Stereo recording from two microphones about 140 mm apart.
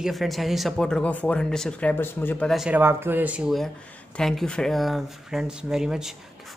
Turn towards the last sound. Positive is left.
turn(degrees=-5)  # may be behind; listen again after turning